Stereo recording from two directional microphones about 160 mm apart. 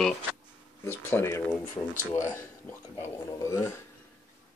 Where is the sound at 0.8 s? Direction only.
15° left (ahead or behind).